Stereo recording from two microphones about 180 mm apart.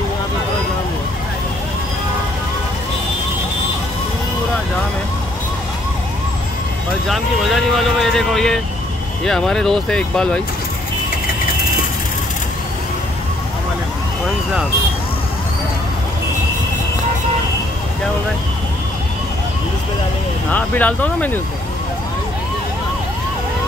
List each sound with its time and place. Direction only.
7.1 s speech: centre (ahead or behind)
20.5 s speech: 10° left (ahead or behind)